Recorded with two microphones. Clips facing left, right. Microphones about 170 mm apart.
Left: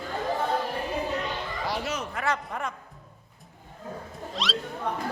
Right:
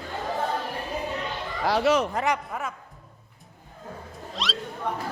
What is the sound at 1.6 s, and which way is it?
Speech, 80° right.